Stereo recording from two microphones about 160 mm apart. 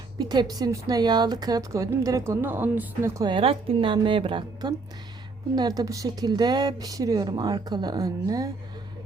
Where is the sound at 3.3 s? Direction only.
35° right (ahead or behind).